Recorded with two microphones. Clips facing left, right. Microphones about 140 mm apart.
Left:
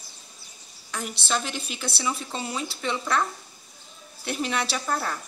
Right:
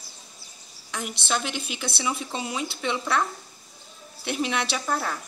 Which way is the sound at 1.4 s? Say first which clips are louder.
Right 1 dB; 15° right (ahead or behind).